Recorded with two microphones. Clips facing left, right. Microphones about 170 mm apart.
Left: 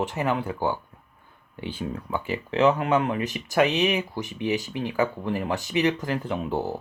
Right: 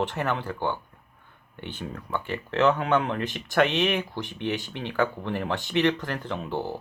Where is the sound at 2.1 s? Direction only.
10° left (ahead or behind).